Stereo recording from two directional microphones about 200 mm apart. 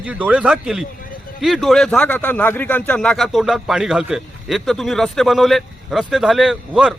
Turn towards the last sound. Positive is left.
turn(degrees=-5)  # may be behind; listen again after turning